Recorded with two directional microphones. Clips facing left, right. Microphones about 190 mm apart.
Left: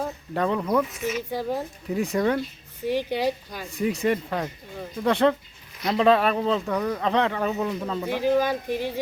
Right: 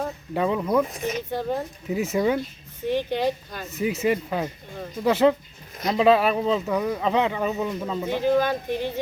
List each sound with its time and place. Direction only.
0.3 s speech: 5° right (ahead or behind)
0.9 s speech: 35° right (ahead or behind)
1.3 s speech: 10° left (ahead or behind)
1.9 s speech: 5° right (ahead or behind)
2.8 s speech: 10° left (ahead or behind)
3.6 s speech: 5° right (ahead or behind)
8.0 s speech: 10° left (ahead or behind)